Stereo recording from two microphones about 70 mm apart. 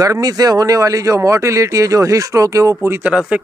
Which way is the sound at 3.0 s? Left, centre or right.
Centre.